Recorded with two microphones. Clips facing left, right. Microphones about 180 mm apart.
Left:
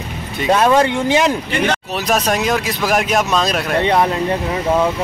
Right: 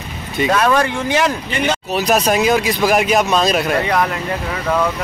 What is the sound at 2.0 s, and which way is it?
Speech, centre (ahead or behind).